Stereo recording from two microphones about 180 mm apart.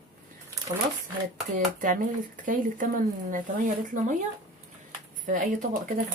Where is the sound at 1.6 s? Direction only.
50° right (ahead or behind).